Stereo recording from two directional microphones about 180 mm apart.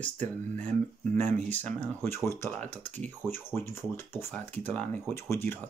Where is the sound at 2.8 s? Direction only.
40° right (ahead or behind).